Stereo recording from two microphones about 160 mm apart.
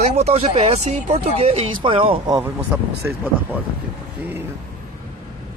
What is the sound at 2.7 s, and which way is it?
Speech, 10° right (ahead or behind).